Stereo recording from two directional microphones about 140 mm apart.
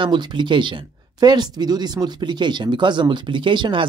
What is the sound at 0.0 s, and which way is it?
Speech, 35° right (ahead or behind).